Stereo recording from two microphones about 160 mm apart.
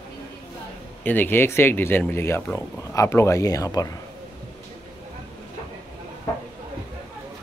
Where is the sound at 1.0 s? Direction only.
10° left (ahead or behind).